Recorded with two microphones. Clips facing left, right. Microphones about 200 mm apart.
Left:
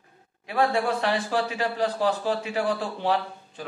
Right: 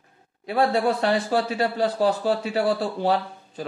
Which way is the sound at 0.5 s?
40° right (ahead or behind).